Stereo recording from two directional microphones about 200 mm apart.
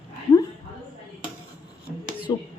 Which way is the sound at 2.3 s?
20° left (ahead or behind).